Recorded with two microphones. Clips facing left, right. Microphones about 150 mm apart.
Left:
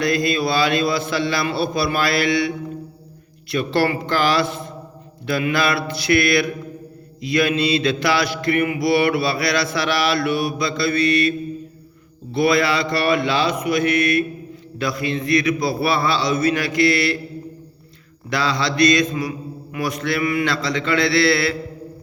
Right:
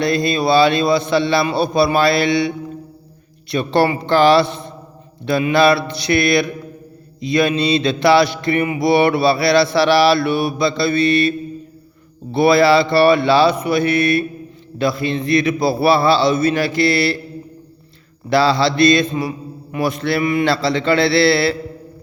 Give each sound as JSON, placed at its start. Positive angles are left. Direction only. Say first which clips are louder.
{"t": 0.0, "sound": "a man's voice", "louder": "right 3 dB", "side_deg": -25}
{"t": 3.5, "sound": "a man's voice", "louder": "right 3 dB", "side_deg": -25}
{"t": 12.3, "sound": "mantra", "louder": "right 6 dB", "side_deg": -30}
{"t": 14.8, "sound": "a man's voice", "louder": "right 4 dB", "side_deg": -30}
{"t": 18.3, "sound": "a man's voice", "louder": "right 7 dB", "side_deg": -30}
{"t": 19.7, "sound": "mantra", "louder": "right 4 dB", "side_deg": -25}